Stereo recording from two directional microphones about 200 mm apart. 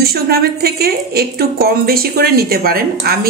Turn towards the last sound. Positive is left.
turn(degrees=-50)  # may be behind; listen again after turning